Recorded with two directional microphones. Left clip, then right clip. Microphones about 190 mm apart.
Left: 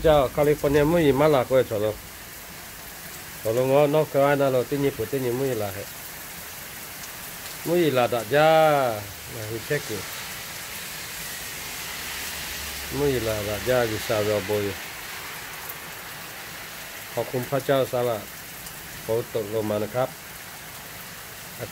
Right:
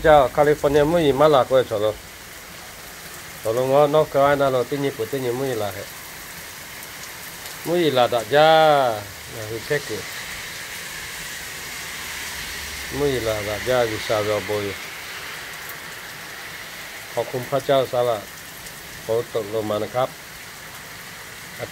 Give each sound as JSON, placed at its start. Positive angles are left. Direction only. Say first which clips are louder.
{"t": 0.0, "sound": "speech", "louder": "right 5 dB", "side_deg": 15}
{"t": 3.4, "sound": "speech", "louder": "right 3 dB", "side_deg": 20}
{"t": 7.6, "sound": "speech", "louder": "right 3 dB", "side_deg": 20}
{"t": 13.0, "sound": "speech", "louder": "right 3 dB", "side_deg": 20}
{"t": 17.1, "sound": "speech", "louder": "right 3 dB", "side_deg": 25}